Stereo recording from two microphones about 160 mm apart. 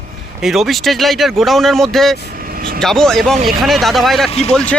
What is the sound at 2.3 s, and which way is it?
Vehicle, 65° right (ahead or behind).